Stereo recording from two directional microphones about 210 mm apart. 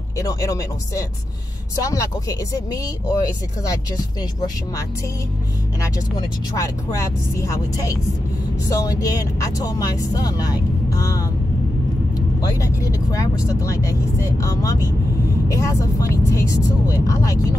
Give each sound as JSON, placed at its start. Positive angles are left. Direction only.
{"t": 0.2, "sound": "speech", "side_deg": 15}
{"t": 12.4, "sound": "speech", "side_deg": 15}